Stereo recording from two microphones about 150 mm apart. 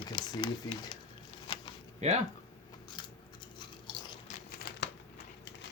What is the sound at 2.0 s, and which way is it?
Speech, 50° right (ahead or behind).